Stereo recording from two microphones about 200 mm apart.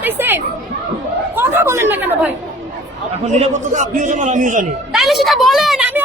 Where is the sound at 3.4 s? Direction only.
35° right (ahead or behind).